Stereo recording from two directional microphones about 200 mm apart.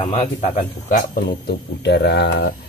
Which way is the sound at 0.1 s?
35° left (ahead or behind).